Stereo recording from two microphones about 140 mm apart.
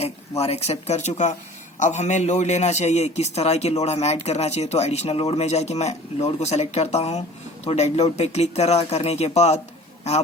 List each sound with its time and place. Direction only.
0.0 s a man's voice: 45° left (ahead or behind)